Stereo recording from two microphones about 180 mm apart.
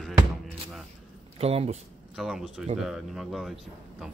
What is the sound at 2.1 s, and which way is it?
Speech, 5° right (ahead or behind).